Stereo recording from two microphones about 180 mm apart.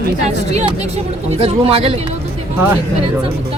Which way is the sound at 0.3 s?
35° right (ahead or behind).